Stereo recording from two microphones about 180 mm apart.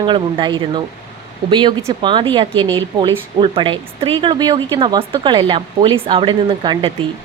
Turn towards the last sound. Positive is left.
turn(degrees=-30)  # may be behind; listen again after turning